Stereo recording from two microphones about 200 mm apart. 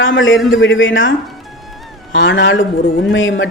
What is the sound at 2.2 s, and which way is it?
A woman's voice, 65° left (ahead or behind).